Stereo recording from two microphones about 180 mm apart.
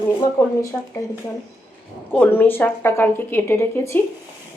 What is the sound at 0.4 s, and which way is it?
Speech, 20° left (ahead or behind).